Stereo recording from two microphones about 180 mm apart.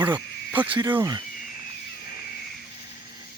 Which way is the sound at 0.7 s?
25° right (ahead or behind).